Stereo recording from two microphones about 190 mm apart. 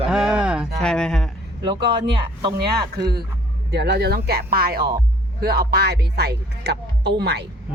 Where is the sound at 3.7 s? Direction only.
60° right (ahead or behind).